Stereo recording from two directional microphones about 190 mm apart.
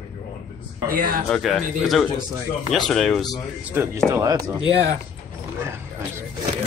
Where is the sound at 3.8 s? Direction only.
10° right (ahead or behind).